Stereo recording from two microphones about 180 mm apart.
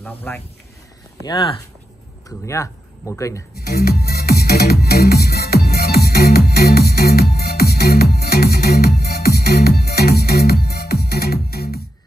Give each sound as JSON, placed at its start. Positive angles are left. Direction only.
{"t": 0.0, "sound": "speech", "side_deg": 10}
{"t": 1.2, "sound": "speech", "side_deg": 25}
{"t": 3.7, "sound": "music", "side_deg": 60}